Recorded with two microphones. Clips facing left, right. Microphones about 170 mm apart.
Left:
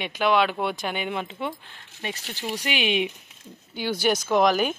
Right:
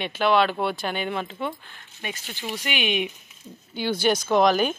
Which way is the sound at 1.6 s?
25° left (ahead or behind).